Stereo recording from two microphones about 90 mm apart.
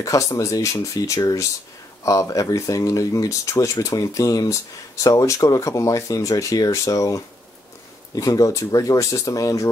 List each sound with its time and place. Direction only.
0.0 s speech: 35° left (ahead or behind)